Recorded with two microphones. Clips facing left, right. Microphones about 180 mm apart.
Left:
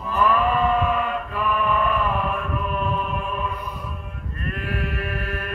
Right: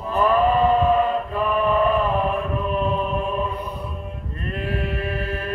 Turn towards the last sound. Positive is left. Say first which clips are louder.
# right 3 dB
turn(degrees=-20)  # may be behind; listen again after turning